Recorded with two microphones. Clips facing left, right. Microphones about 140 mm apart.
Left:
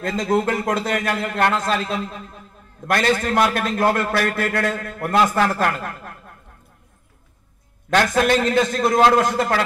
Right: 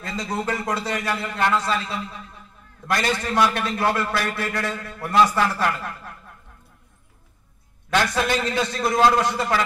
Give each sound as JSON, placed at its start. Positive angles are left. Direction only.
{"t": 0.1, "sound": "a man's voice", "side_deg": 50}
{"t": 8.1, "sound": "a man's voice", "side_deg": 50}